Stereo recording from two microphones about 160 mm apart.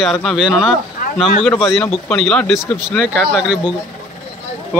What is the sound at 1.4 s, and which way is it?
Speech, 10° left (ahead or behind).